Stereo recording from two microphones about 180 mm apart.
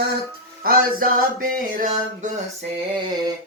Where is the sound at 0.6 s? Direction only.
55° right (ahead or behind).